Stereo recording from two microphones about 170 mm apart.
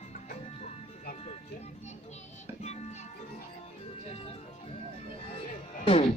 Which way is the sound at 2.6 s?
40° left (ahead or behind).